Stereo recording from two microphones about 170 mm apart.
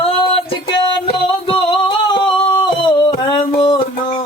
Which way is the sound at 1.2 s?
30° left (ahead or behind).